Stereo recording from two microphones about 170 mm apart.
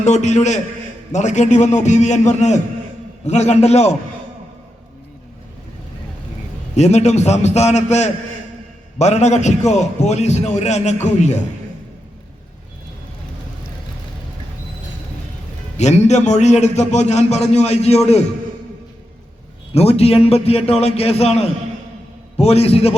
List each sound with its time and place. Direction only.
0.0 s a man's voice: 40° left (ahead or behind)
6.7 s a man's voice: 40° left (ahead or behind)
15.8 s a man's voice: 40° left (ahead or behind)
19.7 s a man's voice: 35° left (ahead or behind)
22.4 s a man's voice: 35° left (ahead or behind)